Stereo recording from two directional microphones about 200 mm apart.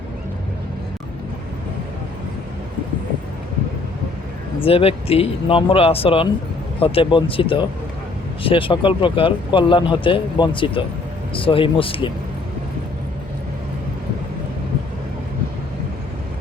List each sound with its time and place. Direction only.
4.6 s speech: 30° left (ahead or behind)